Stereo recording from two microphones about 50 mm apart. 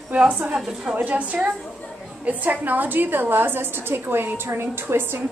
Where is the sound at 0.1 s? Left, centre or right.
Right.